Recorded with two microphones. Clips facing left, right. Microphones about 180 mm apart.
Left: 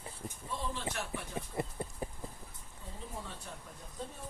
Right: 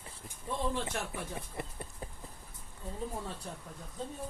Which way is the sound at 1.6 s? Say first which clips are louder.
Left 5 dB; 20° left (ahead or behind).